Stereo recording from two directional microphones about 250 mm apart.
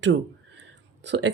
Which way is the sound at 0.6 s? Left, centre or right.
Right.